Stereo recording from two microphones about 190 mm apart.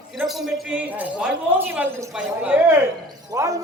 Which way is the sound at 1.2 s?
10° right (ahead or behind).